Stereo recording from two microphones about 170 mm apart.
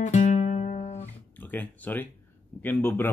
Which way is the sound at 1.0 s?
10° left (ahead or behind).